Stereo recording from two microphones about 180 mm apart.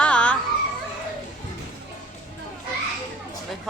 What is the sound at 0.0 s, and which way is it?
Children playing, 5° left (ahead or behind).